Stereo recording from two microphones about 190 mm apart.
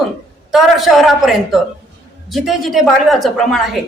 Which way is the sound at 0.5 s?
Centre (ahead or behind).